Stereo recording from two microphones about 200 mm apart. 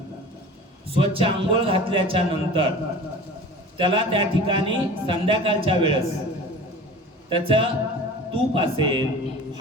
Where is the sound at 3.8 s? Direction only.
25° right (ahead or behind).